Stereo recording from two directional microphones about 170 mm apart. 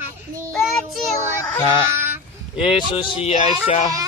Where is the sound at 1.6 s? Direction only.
30° left (ahead or behind).